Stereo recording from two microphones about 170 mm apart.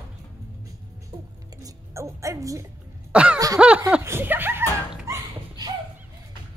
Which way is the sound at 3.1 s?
5° right (ahead or behind).